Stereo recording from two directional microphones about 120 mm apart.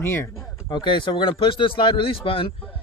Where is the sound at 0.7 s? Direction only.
40° left (ahead or behind).